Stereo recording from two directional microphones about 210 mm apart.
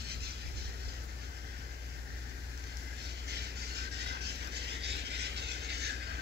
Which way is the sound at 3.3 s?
50° right (ahead or behind).